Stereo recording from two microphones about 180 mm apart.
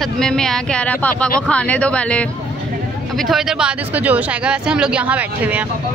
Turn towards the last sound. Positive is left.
turn(degrees=-10)  # may be behind; listen again after turning